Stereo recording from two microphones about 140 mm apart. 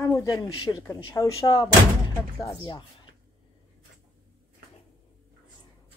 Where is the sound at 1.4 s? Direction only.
35° left (ahead or behind).